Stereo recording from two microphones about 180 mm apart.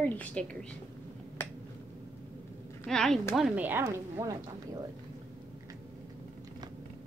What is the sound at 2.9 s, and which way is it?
Speech, 5° left (ahead or behind).